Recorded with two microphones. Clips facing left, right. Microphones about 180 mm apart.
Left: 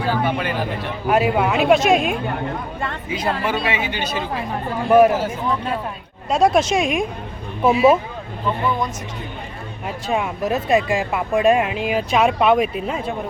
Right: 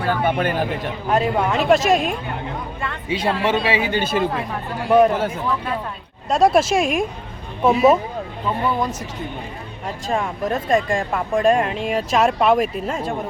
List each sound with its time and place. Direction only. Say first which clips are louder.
0.0 s speech: right 1 dB; 55° right (ahead or behind)
1.0 s speech: left 2 dB; 5° left (ahead or behind)
3.1 s speech: right 3 dB; 30° right (ahead or behind)
3.8 s speech: right 4 dB; 40° right (ahead or behind)
4.9 s speech: left 2 dB; 5° left (ahead or behind)
6.3 s speech: right 1 dB; centre (ahead or behind)
9.8 s speech: left 1 dB; 5° left (ahead or behind)